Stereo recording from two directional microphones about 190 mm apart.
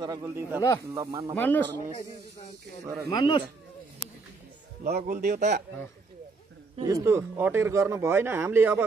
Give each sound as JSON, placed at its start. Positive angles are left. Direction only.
{"t": 0.2, "sound": "speech", "side_deg": -10}
{"t": 1.3, "sound": "speech", "side_deg": 10}
{"t": 2.8, "sound": "speech", "side_deg": -15}
{"t": 3.1, "sound": "speech", "side_deg": 25}
{"t": 4.8, "sound": "a man's voice", "side_deg": -50}
{"t": 6.8, "sound": "speech", "side_deg": -15}